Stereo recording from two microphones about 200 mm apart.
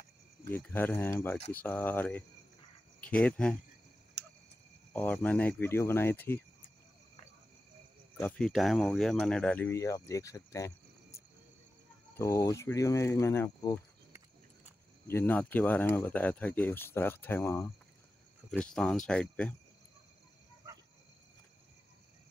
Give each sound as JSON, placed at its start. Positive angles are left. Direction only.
{"t": 0.5, "sound": "speech", "side_deg": 10}
{"t": 4.2, "sound": "tick", "side_deg": -60}
{"t": 4.9, "sound": "speech", "side_deg": 5}
{"t": 8.2, "sound": "speech", "side_deg": 5}
{"t": 15.0, "sound": "speech", "side_deg": 10}